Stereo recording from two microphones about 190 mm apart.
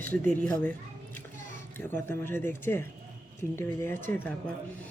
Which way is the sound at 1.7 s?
10° left (ahead or behind).